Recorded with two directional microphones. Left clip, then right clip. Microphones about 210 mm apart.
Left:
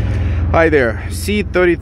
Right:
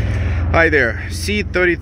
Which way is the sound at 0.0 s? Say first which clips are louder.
Even; 15° left (ahead or behind).